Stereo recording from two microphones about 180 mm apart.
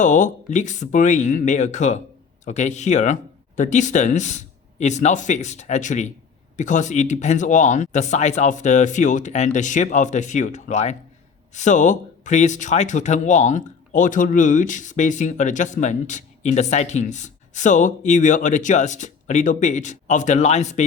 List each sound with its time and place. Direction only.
0.0 s speech: 45° left (ahead or behind)